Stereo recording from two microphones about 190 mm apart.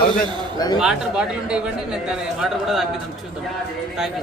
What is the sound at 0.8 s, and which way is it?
Speech, 5° right (ahead or behind).